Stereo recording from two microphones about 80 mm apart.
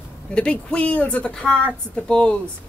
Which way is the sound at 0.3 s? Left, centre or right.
Centre.